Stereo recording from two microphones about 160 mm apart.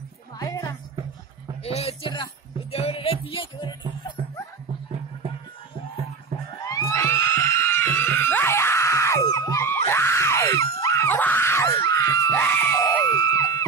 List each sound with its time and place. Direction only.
0.4 s music: 20° left (ahead or behind)
1.6 s music: 40° left (ahead or behind)
6.6 s screaming: 20° left (ahead or behind)